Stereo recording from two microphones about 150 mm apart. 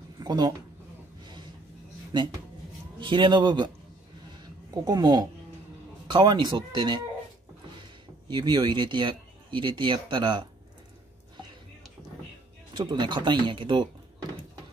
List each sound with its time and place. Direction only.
0.2 s speech: 25° right (ahead or behind)
3.0 s speech: 35° right (ahead or behind)
4.4 s a sound: 25° right (ahead or behind)
6.0 s speech: 30° right (ahead or behind)
8.3 s speech: 30° right (ahead or behind)
12.7 s speech: 30° right (ahead or behind)